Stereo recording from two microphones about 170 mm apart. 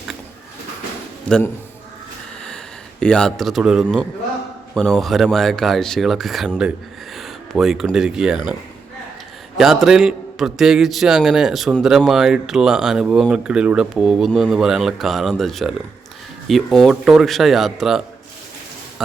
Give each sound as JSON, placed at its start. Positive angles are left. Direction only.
{"t": 1.3, "sound": "a man's voice", "side_deg": 5}
{"t": 3.0, "sound": "a man's voice", "side_deg": 5}
{"t": 9.6, "sound": "a man's voice", "side_deg": 0}